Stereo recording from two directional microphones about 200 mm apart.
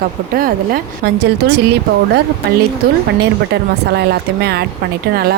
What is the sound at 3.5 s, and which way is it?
Speech, 55° right (ahead or behind).